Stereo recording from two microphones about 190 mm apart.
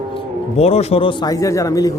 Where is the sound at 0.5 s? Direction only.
35° left (ahead or behind).